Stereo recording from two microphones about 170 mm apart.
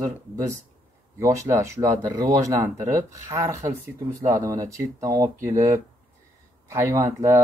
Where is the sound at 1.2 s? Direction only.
20° right (ahead or behind).